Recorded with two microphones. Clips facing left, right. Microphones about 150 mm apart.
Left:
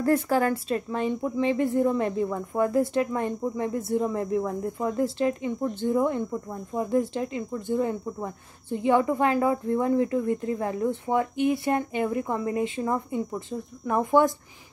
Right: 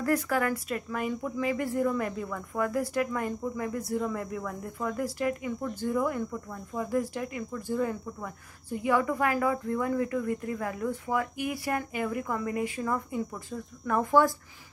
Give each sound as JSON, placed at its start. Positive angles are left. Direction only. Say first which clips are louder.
{"t": 0.0, "sound": "a woman's voice", "louder": "left 5 dB", "side_deg": 30}